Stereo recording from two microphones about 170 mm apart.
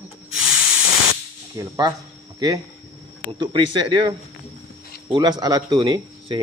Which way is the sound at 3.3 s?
30° right (ahead or behind).